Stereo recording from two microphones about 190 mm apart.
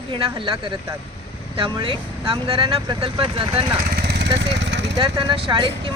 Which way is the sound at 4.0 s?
60° right (ahead or behind).